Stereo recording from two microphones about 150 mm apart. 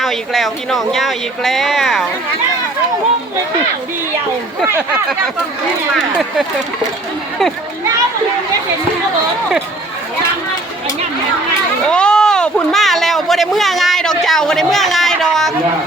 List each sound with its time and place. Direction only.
0.0 s speech: centre (ahead or behind)
4.6 s speech: 15° right (ahead or behind)
11.9 s a sound: 5° left (ahead or behind)